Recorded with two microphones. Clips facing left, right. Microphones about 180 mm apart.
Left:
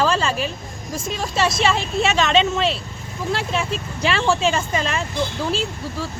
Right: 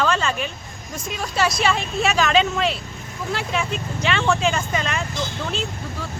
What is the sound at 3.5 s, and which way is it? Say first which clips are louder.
Speech: left 1 dB; 30° left (ahead or behind).